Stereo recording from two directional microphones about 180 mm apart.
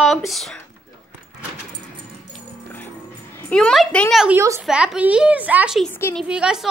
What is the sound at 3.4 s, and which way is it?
Speech, 5° left (ahead or behind).